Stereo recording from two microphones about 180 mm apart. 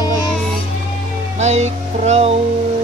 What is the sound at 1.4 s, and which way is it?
Music, 40° right (ahead or behind).